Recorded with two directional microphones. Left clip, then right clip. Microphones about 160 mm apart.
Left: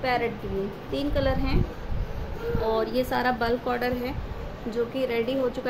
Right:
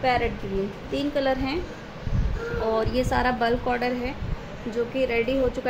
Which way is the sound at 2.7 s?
15° right (ahead or behind).